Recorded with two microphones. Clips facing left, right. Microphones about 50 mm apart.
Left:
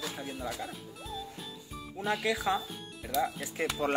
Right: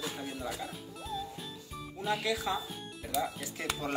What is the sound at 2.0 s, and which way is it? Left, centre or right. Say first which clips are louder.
Speech: left 1 dB; left.